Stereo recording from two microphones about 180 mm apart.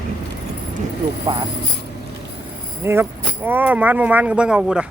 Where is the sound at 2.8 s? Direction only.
15° right (ahead or behind).